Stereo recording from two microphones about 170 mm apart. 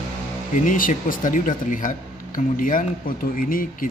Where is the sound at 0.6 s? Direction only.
50° left (ahead or behind).